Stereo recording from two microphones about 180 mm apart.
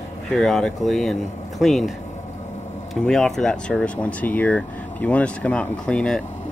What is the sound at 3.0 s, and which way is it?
Speech, centre (ahead or behind).